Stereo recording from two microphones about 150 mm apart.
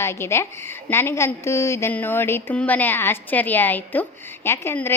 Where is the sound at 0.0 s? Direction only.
15° left (ahead or behind).